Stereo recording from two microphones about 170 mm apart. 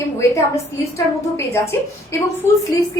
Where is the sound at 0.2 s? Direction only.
15° left (ahead or behind).